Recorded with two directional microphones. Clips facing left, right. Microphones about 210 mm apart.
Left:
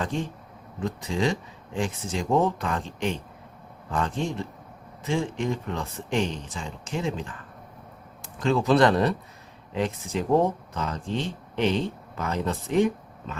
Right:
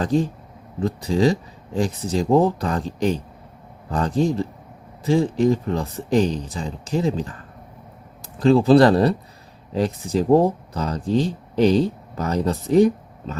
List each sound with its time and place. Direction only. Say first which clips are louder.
0.0 s speech: right 9 dB; 35° right (ahead or behind)